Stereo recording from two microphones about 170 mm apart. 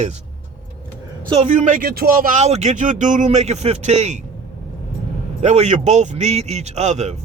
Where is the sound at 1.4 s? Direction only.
45° right (ahead or behind).